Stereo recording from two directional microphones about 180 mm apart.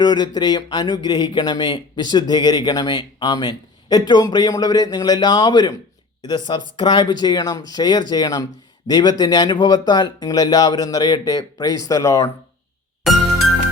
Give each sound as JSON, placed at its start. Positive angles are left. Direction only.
{"t": 0.0, "sound": "speech", "side_deg": 25}